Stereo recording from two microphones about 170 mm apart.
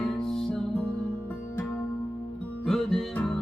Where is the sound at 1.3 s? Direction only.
15° left (ahead or behind).